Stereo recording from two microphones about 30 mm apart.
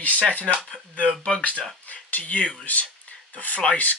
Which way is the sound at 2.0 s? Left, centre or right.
Left.